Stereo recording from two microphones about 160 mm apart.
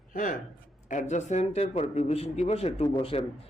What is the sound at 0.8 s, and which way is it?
A man's voice, 50° left (ahead or behind).